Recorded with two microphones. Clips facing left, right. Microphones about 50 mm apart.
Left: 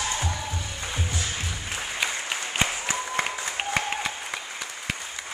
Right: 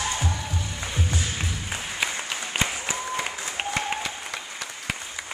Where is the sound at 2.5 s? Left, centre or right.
Left.